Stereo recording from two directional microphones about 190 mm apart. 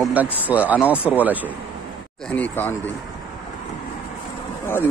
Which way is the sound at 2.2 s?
10° left (ahead or behind).